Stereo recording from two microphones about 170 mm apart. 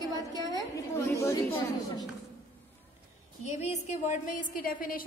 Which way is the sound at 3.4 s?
40° left (ahead or behind).